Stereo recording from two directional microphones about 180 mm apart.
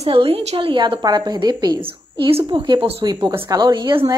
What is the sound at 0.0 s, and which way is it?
A woman's voice, 30° right (ahead or behind).